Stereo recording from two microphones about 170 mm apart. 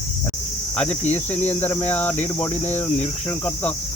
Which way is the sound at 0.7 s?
10° left (ahead or behind).